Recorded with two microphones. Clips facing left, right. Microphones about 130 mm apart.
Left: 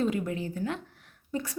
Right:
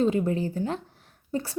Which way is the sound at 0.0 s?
30° right (ahead or behind).